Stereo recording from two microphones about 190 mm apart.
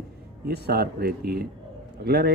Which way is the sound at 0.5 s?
55° right (ahead or behind).